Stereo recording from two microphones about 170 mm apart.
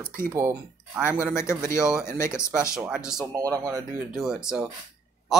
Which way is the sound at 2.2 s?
15° left (ahead or behind).